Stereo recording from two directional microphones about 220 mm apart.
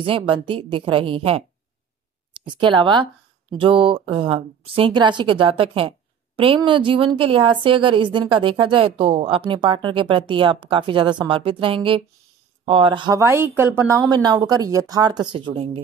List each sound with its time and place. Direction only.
0.0 s speech: 25° right (ahead or behind)